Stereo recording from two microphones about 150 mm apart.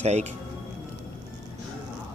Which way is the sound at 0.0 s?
50° right (ahead or behind).